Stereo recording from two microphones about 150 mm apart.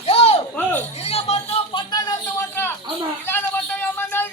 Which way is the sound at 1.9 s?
20° left (ahead or behind).